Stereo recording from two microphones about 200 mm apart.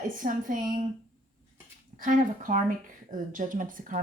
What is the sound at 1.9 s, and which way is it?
Speech, 40° right (ahead or behind).